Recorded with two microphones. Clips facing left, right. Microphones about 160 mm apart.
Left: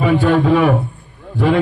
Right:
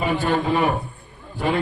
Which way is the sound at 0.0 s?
70° left (ahead or behind).